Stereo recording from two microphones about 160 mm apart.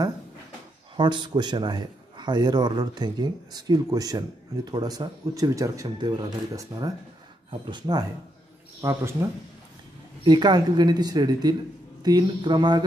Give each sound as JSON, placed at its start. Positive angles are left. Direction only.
{"t": 0.9, "sound": "a man's voice", "side_deg": -30}
{"t": 8.8, "sound": "a man's voice", "side_deg": -15}